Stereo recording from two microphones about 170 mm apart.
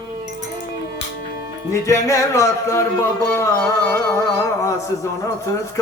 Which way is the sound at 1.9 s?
20° left (ahead or behind).